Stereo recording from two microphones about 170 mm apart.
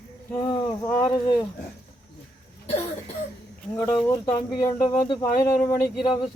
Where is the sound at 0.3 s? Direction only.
25° left (ahead or behind).